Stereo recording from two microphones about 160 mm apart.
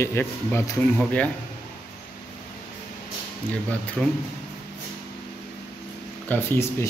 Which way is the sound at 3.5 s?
10° left (ahead or behind).